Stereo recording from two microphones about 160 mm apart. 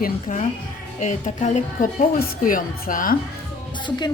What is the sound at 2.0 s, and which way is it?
A woman's voice, 65° left (ahead or behind).